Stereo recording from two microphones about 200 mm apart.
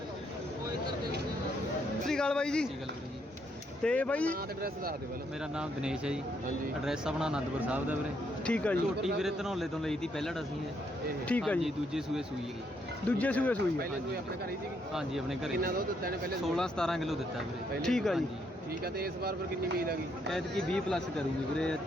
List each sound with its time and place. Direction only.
2.0 s speech: 5° left (ahead or behind)
3.8 s speech: 5° left (ahead or behind)
5.5 s a man's voice: 5° right (ahead or behind)
8.4 s a man's voice: 5° left (ahead or behind)
14.9 s a man's voice: centre (ahead or behind)
15.6 s speech: 45° right (ahead or behind)
16.6 s a man's voice: 5° left (ahead or behind)
18.9 s speech: 50° right (ahead or behind)
20.3 s a man's voice: 5° left (ahead or behind)